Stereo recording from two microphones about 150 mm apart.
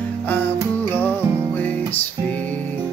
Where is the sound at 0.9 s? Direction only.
15° left (ahead or behind).